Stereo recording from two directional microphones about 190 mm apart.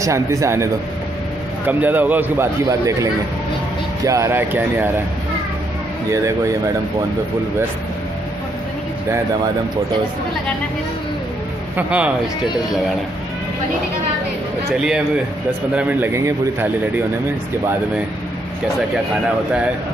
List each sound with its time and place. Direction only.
0.0 s a man's voice: 15° right (ahead or behind)
1.7 s a man's voice: 10° right (ahead or behind)
6.0 s a man's voice: 15° right (ahead or behind)
11.7 s a man's voice: 5° right (ahead or behind)
15.7 s a man's voice: 10° right (ahead or behind)